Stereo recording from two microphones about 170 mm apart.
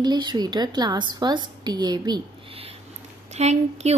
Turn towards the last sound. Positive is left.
turn(degrees=-40)  # may be behind; listen again after turning